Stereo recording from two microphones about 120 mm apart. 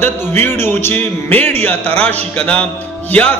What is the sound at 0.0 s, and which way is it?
Speech, 15° left (ahead or behind).